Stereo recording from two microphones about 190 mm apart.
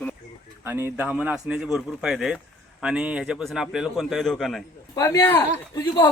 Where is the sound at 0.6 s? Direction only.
15° right (ahead or behind).